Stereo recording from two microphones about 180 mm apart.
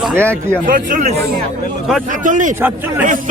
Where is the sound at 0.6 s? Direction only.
50° right (ahead or behind).